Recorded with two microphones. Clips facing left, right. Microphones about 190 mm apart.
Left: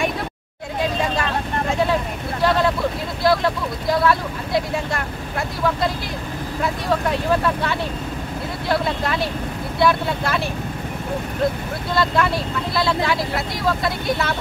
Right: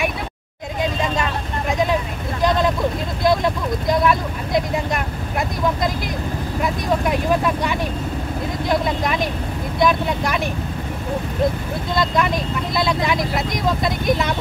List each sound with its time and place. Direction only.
1.7 s vehicle: 15° right (ahead or behind)
3.3 s speech: 20° right (ahead or behind)
6.6 s speech: 15° right (ahead or behind)
11.9 s speech: 15° right (ahead or behind)